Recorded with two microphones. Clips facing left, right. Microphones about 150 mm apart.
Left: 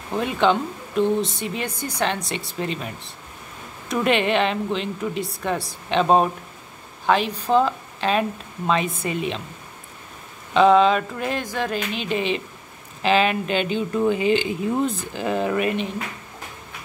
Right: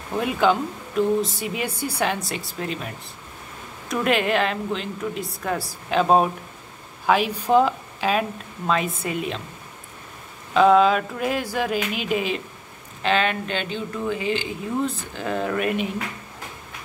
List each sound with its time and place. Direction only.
0.2 s a woman's voice: 5° right (ahead or behind)
3.9 s a woman's voice: centre (ahead or behind)
10.5 s a woman's voice: 5° right (ahead or behind)
13.0 s speech: 5° left (ahead or behind)
15.1 s speech: 5° left (ahead or behind)